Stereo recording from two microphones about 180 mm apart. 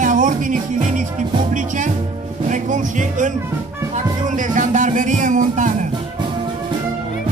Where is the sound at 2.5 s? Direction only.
45° right (ahead or behind).